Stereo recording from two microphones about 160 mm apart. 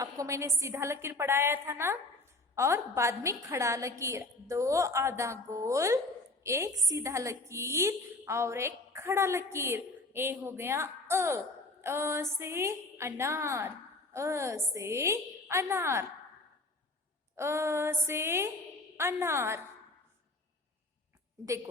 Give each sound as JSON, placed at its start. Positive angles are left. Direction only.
{"t": 0.0, "sound": "a woman's voice", "side_deg": -20}
{"t": 17.3, "sound": "a woman's voice", "side_deg": -15}